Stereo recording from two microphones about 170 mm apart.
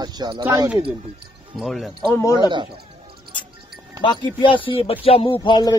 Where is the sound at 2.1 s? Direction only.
20° left (ahead or behind).